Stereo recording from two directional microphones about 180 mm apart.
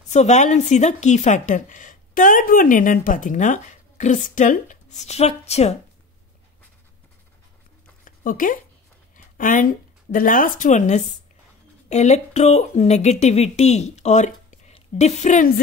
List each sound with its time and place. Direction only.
0.1 s a woman's voice: 40° left (ahead or behind)
8.0 s a sound: 50° left (ahead or behind)
9.1 s speech: 45° left (ahead or behind)